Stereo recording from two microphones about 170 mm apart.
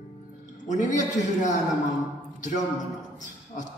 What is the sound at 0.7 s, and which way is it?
Speech, 45° left (ahead or behind).